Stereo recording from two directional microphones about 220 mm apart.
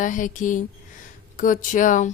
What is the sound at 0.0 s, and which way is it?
A woman's voice, 35° left (ahead or behind).